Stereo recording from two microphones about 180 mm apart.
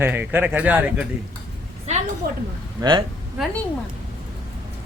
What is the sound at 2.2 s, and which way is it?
Speech, 55° right (ahead or behind).